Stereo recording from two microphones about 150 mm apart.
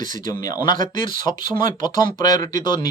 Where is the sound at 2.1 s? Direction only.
60° right (ahead or behind).